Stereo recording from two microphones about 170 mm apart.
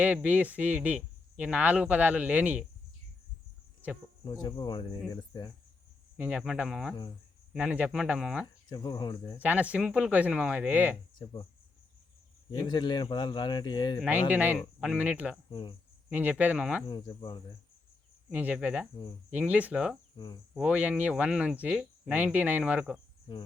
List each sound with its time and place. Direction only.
0.0 s speech: 10° right (ahead or behind)
4.2 s speech: 25° left (ahead or behind)
6.1 s speech: 10° right (ahead or behind)
8.7 s speech: 25° left (ahead or behind)
9.4 s speech: 10° right (ahead or behind)
11.2 s speech: 25° left (ahead or behind)
12.5 s speech: 25° left (ahead or behind)
14.3 s speech: 10° right (ahead or behind)
15.4 s speech: 30° left (ahead or behind)
16.0 s speech: 10° right (ahead or behind)
16.9 s speech: 25° left (ahead or behind)
18.3 s speech: 10° right (ahead or behind)